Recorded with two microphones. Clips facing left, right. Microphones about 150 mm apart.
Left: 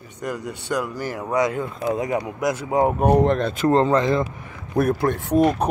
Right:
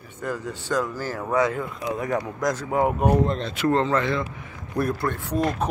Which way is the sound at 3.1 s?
60° left (ahead or behind).